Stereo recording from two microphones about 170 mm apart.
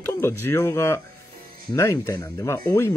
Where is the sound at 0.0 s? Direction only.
15° left (ahead or behind).